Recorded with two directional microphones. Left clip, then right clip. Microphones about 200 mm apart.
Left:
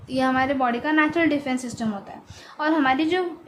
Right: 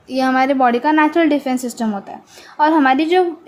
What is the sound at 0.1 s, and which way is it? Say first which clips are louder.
A woman's voice: right 6 dB; 20° right (ahead or behind).